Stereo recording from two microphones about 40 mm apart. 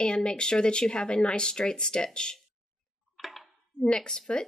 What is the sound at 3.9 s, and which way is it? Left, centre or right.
Speech, centre.